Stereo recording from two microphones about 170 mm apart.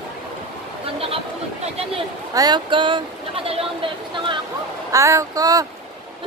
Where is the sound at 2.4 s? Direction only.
25° right (ahead or behind).